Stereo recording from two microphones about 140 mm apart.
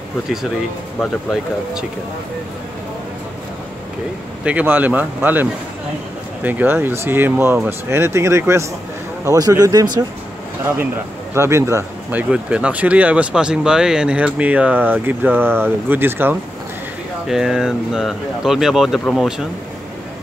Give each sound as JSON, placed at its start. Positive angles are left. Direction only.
{"t": 1.3, "sound": "speech", "side_deg": -5}
{"t": 4.5, "sound": "speech", "side_deg": -10}
{"t": 11.3, "sound": "speech", "side_deg": -20}
{"t": 17.3, "sound": "speech", "side_deg": -5}